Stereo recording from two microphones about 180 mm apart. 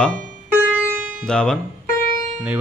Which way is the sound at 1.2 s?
5° left (ahead or behind).